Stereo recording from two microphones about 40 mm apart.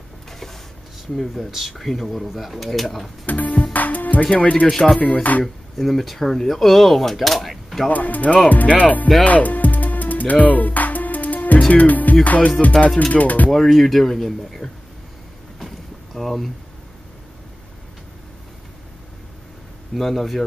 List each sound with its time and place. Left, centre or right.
0.3 s a sound: centre
1.1 s speech: centre
3.3 s music: left
4.2 s speech: left
4.6 s speech: centre
5.0 s speech: left
5.4 s speech: centre
7.9 s speech: left
9.2 s music: left
12.6 s speech: centre
13.1 s music: left
13.5 s speech: centre
15.6 s boat: centre
20.0 s speech: centre